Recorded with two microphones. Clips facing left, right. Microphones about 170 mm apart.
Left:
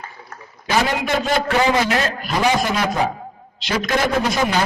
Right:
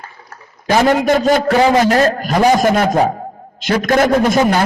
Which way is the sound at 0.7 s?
45° right (ahead or behind).